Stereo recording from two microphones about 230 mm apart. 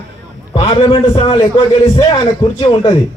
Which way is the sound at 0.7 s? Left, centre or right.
Left.